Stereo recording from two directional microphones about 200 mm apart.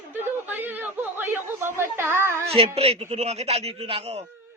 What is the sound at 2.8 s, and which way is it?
Speech, 30° right (ahead or behind).